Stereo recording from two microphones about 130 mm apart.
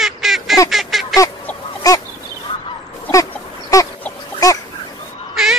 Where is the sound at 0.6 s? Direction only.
Centre (ahead or behind).